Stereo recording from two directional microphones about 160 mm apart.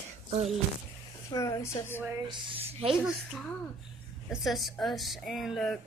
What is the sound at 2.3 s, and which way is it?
Speech, 30° right (ahead or behind).